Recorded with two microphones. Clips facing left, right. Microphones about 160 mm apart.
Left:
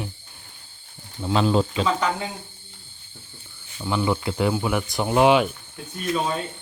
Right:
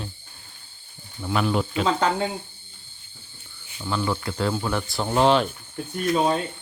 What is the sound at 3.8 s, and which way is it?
Speech, 15° left (ahead or behind).